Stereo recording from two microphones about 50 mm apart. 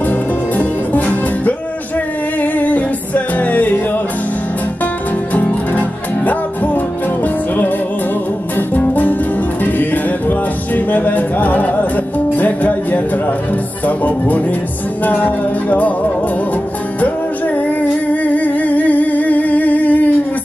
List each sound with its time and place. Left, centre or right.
0.6 s music: left
5.3 s music: left
8.5 s music: left
17.6 s music: left